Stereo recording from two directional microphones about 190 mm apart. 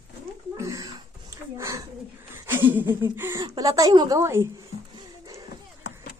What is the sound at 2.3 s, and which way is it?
Speech, 10° right (ahead or behind).